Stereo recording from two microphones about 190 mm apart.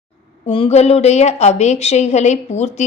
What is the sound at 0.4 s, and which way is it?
A woman's voice, 30° left (ahead or behind).